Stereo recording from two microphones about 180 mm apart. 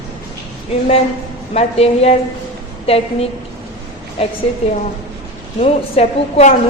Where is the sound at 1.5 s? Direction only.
35° left (ahead or behind).